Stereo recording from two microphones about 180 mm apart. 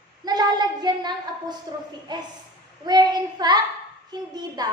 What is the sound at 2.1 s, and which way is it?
A woman's voice, 25° right (ahead or behind).